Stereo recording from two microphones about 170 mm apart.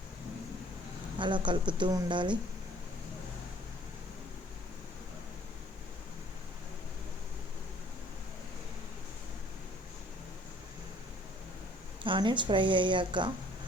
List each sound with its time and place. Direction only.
1.2 s a woman's voice: 30° right (ahead or behind)
12.0 s a woman's voice: 30° right (ahead or behind)